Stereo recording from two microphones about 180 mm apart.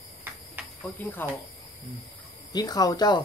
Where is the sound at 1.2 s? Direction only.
10° left (ahead or behind).